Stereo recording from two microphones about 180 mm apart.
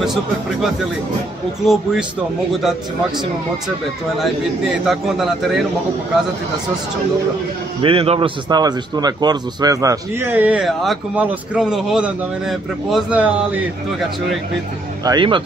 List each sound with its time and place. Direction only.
0.0 s a man's voice: 5° right (ahead or behind)
4.2 s a man's voice: centre (ahead or behind)
7.8 s a man's voice: 30° right (ahead or behind); by 13.7 s 10° right (ahead or behind)
15.0 s speech: 25° right (ahead or behind)